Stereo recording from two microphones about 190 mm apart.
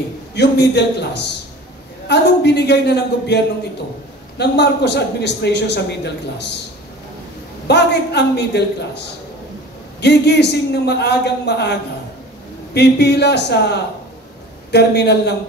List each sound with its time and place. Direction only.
0.3 s a man's voice: 60° left (ahead or behind)
7.6 s a man's voice: 60° left (ahead or behind)
12.7 s a man's voice: 60° left (ahead or behind)